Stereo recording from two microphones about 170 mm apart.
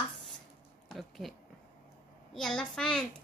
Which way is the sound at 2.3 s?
5° left (ahead or behind).